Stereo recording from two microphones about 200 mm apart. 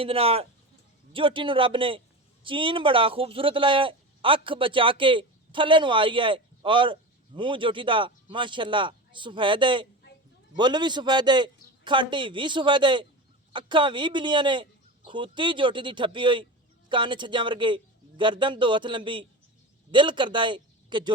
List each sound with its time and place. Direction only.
0.0 s a man's voice: 30° right (ahead or behind)